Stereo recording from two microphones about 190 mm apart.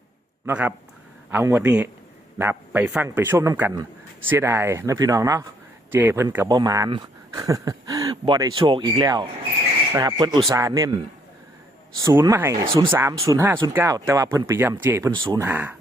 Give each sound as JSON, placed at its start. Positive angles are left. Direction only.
{"t": 0.4, "sound": "speech", "side_deg": -10}
{"t": 12.0, "sound": "speech", "side_deg": -15}
{"t": 15.4, "sound": "speech", "side_deg": -10}